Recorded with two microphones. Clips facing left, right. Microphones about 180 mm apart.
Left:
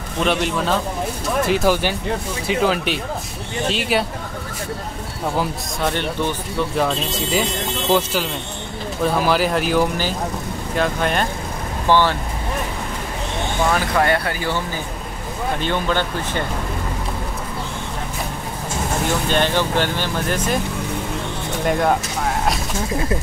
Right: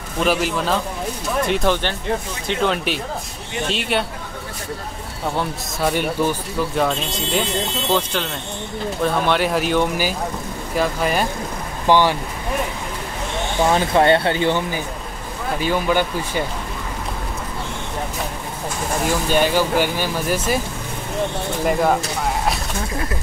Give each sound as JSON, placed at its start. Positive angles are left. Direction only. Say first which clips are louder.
{"t": 0.2, "sound": "speech", "louder": "even", "side_deg": -5}
{"t": 5.8, "sound": "speech", "louder": "right 2 dB", "side_deg": -5}
{"t": 11.9, "sound": "speech", "louder": "right 1 dB", "side_deg": -15}
{"t": 13.7, "sound": "speech", "louder": "right 4 dB", "side_deg": -25}
{"t": 15.6, "sound": "speech", "louder": "right 4 dB", "side_deg": -10}
{"t": 19.2, "sound": "speech", "louder": "right 3 dB", "side_deg": -10}
{"t": 21.6, "sound": "speech", "louder": "even", "side_deg": 0}